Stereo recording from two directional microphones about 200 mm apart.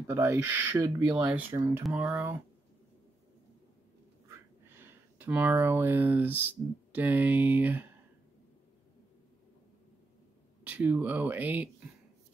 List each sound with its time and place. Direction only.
0.0 s speech: 10° right (ahead or behind)
4.3 s speech: 10° right (ahead or behind)
10.6 s speech: 5° right (ahead or behind)